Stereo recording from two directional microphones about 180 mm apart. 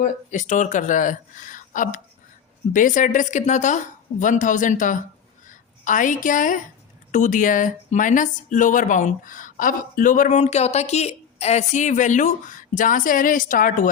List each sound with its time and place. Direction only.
0.0 s a woman's voice: 45° left (ahead or behind)